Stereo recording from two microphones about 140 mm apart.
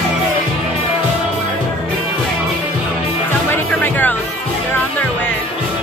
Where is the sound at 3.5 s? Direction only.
15° left (ahead or behind).